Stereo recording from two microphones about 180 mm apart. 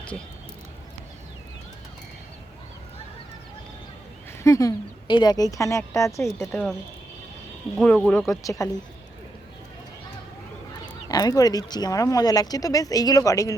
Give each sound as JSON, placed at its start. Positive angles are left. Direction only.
{"t": 4.4, "sound": "a woman's voice", "side_deg": 20}
{"t": 7.8, "sound": "speech", "side_deg": 5}
{"t": 8.3, "sound": "a woman's voice", "side_deg": 20}
{"t": 11.1, "sound": "speech", "side_deg": 20}